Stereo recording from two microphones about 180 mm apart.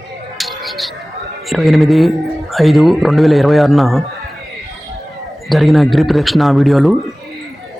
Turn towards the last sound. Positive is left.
turn(degrees=0)  # may be behind; listen again after turning